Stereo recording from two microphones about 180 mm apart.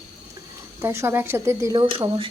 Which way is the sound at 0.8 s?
15° right (ahead or behind).